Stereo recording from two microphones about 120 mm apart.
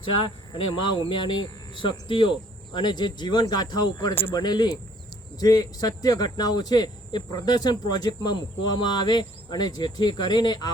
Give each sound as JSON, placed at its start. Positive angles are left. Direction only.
{"t": 0.2, "sound": "a man's voice", "side_deg": 45}
{"t": 4.1, "sound": "speech", "side_deg": 50}
{"t": 4.4, "sound": "a man's voice", "side_deg": 35}